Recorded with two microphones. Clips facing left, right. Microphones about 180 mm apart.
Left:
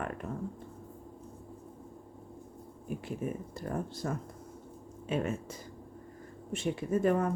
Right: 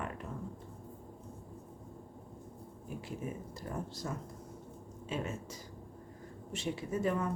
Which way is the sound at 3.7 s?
55° left (ahead or behind).